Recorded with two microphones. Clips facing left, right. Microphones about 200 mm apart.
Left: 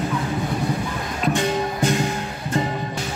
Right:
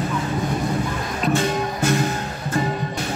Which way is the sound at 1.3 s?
15° left (ahead or behind).